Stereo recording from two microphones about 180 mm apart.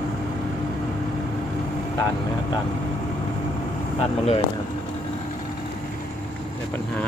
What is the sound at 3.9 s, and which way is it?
Speech, 30° left (ahead or behind).